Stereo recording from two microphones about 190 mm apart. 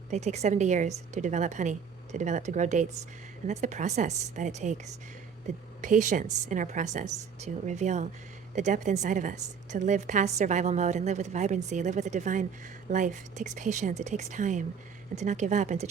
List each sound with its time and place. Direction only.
0.1 s a woman's voice: 35° right (ahead or behind)
5.8 s a woman's voice: 40° right (ahead or behind)